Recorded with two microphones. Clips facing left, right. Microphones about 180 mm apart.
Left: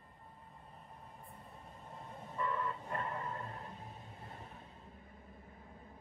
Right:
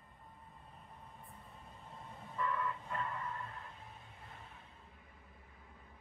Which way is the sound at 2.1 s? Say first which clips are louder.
Even; 25° left (ahead or behind).